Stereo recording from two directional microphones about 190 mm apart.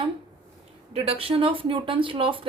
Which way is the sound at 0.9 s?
30° right (ahead or behind).